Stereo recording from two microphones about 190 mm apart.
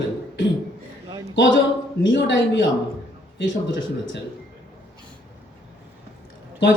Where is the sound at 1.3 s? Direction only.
70° left (ahead or behind).